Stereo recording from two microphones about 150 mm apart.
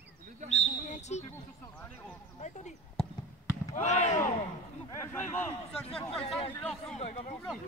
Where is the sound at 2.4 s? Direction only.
50° left (ahead or behind).